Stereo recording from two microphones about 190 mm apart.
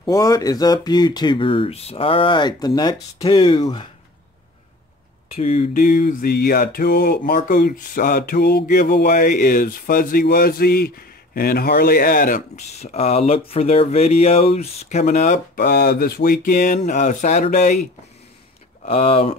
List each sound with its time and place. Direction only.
0.0 s speech: 15° left (ahead or behind)
5.3 s speech: 35° left (ahead or behind)
5.7 s a sound: 45° left (ahead or behind)
18.9 s speech: 30° left (ahead or behind)